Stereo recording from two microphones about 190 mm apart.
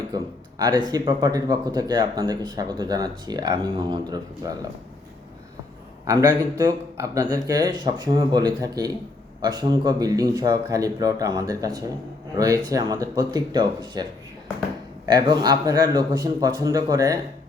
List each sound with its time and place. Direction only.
0.1 s speech: 20° right (ahead or behind)
6.1 s speech: 20° right (ahead or behind)